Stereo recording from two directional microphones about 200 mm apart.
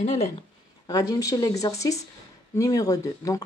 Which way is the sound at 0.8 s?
20° left (ahead or behind).